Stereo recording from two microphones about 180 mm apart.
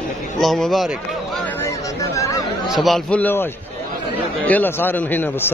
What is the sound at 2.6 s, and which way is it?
A man's voice, centre (ahead or behind).